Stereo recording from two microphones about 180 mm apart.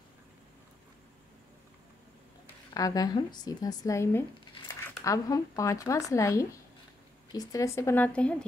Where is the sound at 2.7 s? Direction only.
20° left (ahead or behind).